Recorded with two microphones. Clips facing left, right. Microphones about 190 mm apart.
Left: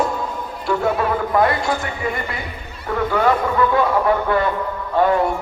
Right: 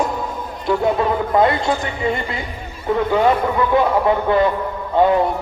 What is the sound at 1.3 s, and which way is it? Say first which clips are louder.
Speech: right 2 dB; 25° right (ahead or behind).